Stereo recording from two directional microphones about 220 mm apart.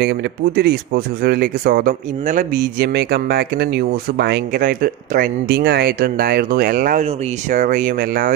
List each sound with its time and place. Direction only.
0.0 s speech: 45° right (ahead or behind)